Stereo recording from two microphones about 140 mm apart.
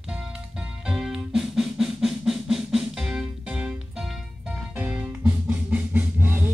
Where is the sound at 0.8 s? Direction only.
Centre (ahead or behind).